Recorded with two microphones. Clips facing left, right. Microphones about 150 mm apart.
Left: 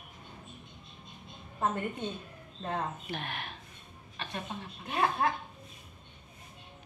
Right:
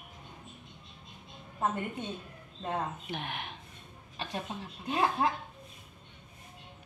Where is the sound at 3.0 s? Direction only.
15° right (ahead or behind).